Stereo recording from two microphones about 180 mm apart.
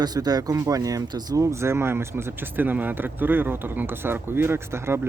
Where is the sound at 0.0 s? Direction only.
20° right (ahead or behind).